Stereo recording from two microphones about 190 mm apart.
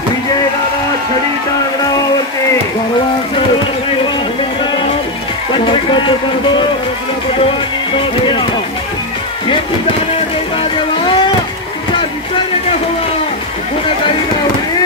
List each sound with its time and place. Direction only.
5.5 s speech: 25° left (ahead or behind)
10.1 s vehicle: 30° left (ahead or behind)